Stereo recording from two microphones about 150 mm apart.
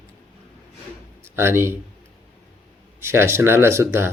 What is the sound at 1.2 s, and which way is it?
Speech, 15° right (ahead or behind).